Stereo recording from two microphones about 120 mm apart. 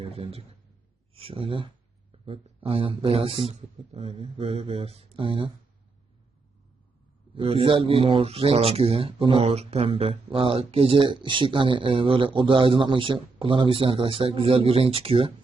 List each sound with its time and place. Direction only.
0.0 s a man's voice: 55° right (ahead or behind)
7.3 s a man's voice: 50° right (ahead or behind)